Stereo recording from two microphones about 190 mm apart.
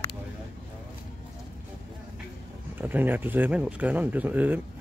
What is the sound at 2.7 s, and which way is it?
Speech, 10° right (ahead or behind).